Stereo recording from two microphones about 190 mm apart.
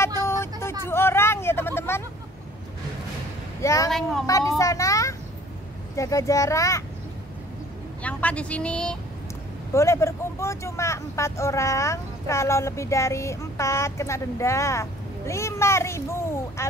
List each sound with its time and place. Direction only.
0.0 s vehicle: 15° left (ahead or behind)
3.6 s speech: 15° left (ahead or behind)
8.0 s speech: 5° left (ahead or behind)